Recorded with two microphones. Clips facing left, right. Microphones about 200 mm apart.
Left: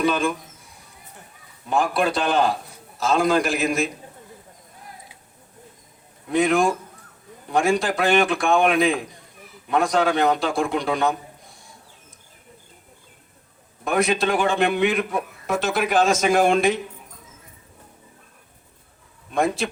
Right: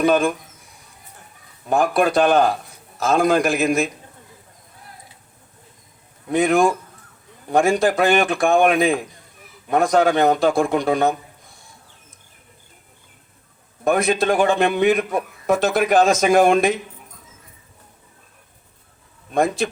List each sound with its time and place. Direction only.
0.0 s a man's voice: 45° right (ahead or behind)
1.7 s a man's voice: 45° right (ahead or behind)
6.3 s a man's voice: 45° right (ahead or behind)
13.8 s a man's voice: 45° right (ahead or behind)
19.3 s a man's voice: 45° right (ahead or behind)